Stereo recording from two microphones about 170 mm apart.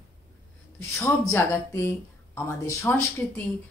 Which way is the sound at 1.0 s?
15° left (ahead or behind).